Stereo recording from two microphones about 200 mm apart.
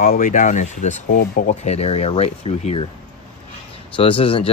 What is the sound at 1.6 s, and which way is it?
Speech, 30° left (ahead or behind).